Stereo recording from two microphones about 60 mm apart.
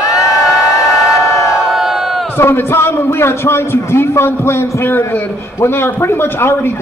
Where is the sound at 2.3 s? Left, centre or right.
Left.